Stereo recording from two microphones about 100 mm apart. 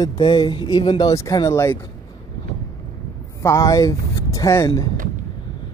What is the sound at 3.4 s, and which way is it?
Speech, 35° left (ahead or behind).